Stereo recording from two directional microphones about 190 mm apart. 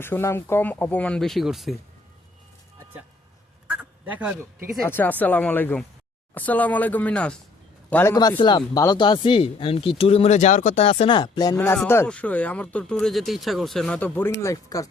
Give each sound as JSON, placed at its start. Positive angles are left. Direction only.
{"t": 0.0, "sound": "speech", "side_deg": 15}
{"t": 3.7, "sound": "duck", "side_deg": -5}
{"t": 4.9, "sound": "a man's voice", "side_deg": 10}
{"t": 8.1, "sound": "speech", "side_deg": 20}